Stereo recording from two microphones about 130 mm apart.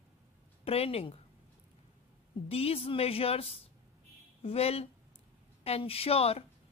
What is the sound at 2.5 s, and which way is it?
A woman's voice, 50° left (ahead or behind).